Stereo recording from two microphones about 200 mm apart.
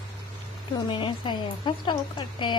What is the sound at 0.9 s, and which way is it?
Speech, 25° left (ahead or behind).